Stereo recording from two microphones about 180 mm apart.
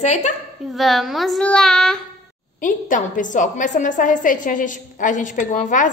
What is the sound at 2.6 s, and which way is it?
A woman's voice, 45° left (ahead or behind).